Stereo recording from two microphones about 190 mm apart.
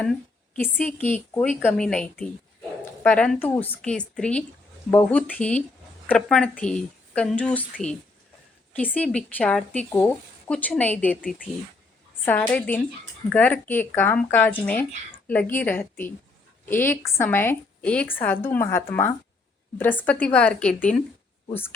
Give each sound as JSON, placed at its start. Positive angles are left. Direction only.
{"t": 0.6, "sound": "speech", "side_deg": 10}